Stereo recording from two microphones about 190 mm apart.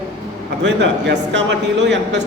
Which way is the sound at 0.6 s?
70° right (ahead or behind).